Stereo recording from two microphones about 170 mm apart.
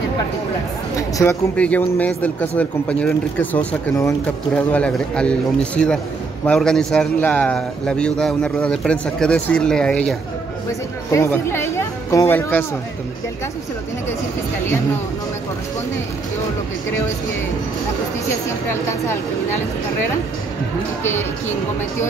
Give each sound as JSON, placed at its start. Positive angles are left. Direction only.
{"t": 0.9, "sound": "a man's voice", "side_deg": 20}
{"t": 11.1, "sound": "speech", "side_deg": 15}
{"t": 18.7, "sound": "speech", "side_deg": 15}
{"t": 21.0, "sound": "speech", "side_deg": 15}